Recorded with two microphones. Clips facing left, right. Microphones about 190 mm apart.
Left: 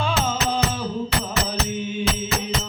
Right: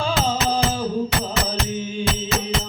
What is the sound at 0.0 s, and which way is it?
Music, 30° right (ahead or behind).